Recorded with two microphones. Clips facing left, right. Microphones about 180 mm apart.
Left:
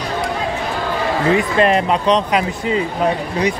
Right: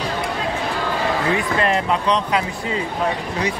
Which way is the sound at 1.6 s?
20° left (ahead or behind).